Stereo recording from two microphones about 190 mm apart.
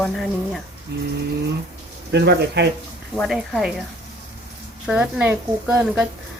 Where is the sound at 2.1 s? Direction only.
60° right (ahead or behind).